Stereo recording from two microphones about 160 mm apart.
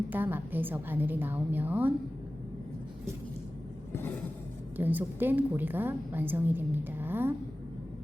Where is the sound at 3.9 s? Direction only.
15° left (ahead or behind).